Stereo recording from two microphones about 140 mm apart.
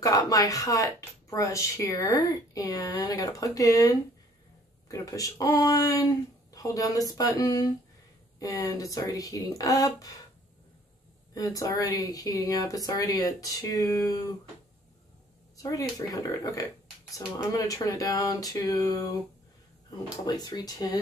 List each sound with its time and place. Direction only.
0.0 s a woman's voice: 25° left (ahead or behind)
11.3 s a woman's voice: 25° left (ahead or behind)
15.5 s a woman's voice: 25° left (ahead or behind)
20.2 s a woman's voice: 30° left (ahead or behind)